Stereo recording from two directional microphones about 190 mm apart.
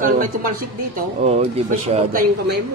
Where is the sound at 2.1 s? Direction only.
45° right (ahead or behind).